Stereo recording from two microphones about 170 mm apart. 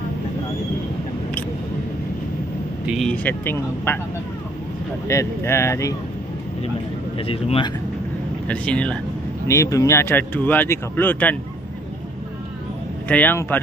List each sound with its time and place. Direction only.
2.9 s speech: 5° left (ahead or behind)
5.0 s speech: 15° left (ahead or behind)
7.2 s speech: 35° left (ahead or behind)
8.5 s speech: 5° left (ahead or behind)
9.5 s speech: 20° left (ahead or behind)
13.1 s speech: 10° left (ahead or behind)